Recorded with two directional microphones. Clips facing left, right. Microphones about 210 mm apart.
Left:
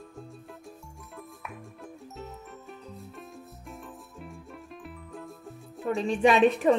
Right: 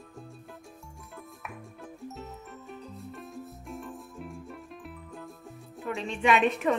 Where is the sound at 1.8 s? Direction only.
Centre (ahead or behind).